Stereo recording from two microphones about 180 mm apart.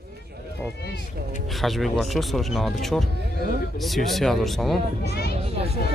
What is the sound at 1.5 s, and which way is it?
Speech, centre (ahead or behind).